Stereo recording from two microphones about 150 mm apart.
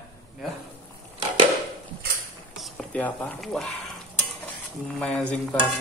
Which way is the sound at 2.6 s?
5° left (ahead or behind).